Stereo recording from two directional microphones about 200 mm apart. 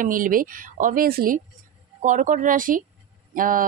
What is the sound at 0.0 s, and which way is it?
Speech, 45° right (ahead or behind).